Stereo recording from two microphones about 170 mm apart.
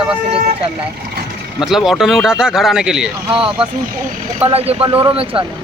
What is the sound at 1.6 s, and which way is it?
Speech, centre (ahead or behind).